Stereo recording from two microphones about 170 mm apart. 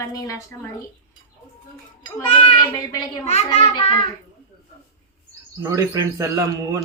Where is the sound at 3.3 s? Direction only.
40° left (ahead or behind).